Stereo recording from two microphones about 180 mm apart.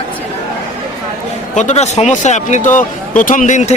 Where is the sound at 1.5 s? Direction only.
40° left (ahead or behind).